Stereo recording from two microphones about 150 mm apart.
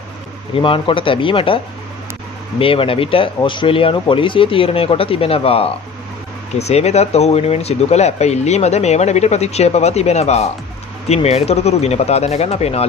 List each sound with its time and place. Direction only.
0.6 s speech: 35° left (ahead or behind)
2.6 s speech: 35° left (ahead or behind)